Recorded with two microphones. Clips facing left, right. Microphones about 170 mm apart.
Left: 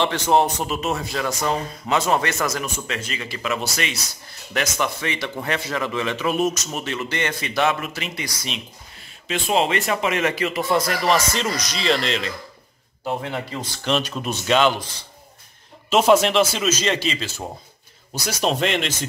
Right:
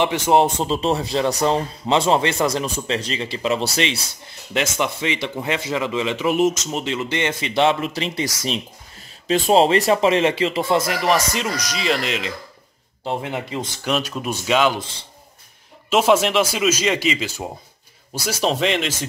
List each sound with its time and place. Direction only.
0.0 s a man's voice: 15° right (ahead or behind); by 8.3 s 35° right (ahead or behind)
9.3 s a man's voice: 35° right (ahead or behind)
13.8 s speech: 5° right (ahead or behind)
15.9 s speech: 5° right (ahead or behind)
18.2 s speech: centre (ahead or behind)